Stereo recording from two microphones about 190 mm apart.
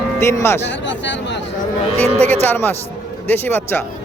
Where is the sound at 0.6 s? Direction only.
70° left (ahead or behind).